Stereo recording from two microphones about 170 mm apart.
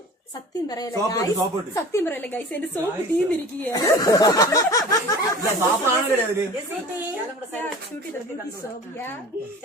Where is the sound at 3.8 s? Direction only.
20° left (ahead or behind).